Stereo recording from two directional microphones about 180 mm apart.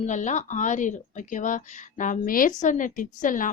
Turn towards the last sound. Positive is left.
turn(degrees=45)  # may be behind; listen again after turning